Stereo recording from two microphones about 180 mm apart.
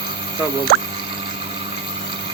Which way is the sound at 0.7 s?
65° right (ahead or behind).